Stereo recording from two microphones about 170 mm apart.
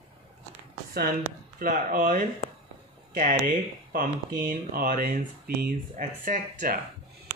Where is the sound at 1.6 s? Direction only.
55° right (ahead or behind).